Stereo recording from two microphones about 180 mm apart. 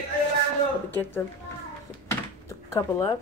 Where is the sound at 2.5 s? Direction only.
15° left (ahead or behind).